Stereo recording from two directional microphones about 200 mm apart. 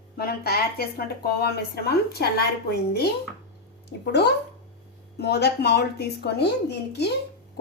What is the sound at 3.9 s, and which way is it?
A woman's voice, 55° left (ahead or behind).